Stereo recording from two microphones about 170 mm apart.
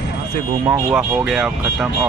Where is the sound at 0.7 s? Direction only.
15° right (ahead or behind).